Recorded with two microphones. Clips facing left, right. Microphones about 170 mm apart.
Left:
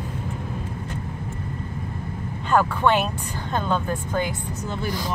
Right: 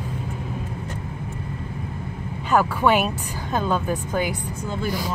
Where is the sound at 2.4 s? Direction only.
10° right (ahead or behind).